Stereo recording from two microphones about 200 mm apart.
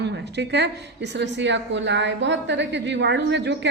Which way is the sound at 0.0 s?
60° right (ahead or behind).